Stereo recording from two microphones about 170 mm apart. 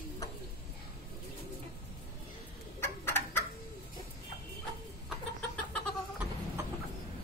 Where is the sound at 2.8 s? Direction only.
15° left (ahead or behind).